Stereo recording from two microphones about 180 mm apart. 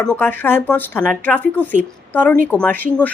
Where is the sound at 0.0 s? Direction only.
10° left (ahead or behind).